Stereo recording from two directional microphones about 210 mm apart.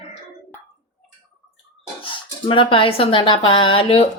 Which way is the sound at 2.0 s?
25° left (ahead or behind).